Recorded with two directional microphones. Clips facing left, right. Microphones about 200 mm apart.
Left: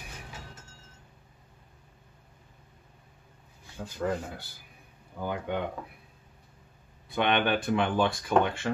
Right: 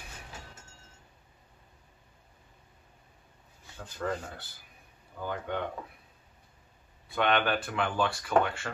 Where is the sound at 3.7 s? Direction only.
10° left (ahead or behind).